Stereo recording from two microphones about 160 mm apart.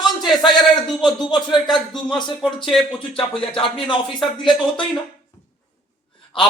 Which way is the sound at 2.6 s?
5° left (ahead or behind).